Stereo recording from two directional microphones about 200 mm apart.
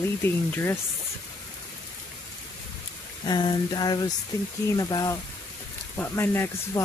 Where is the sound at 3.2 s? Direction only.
20° left (ahead or behind).